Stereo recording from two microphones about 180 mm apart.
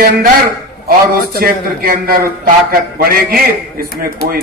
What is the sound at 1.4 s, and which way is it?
A man's voice, 55° right (ahead or behind).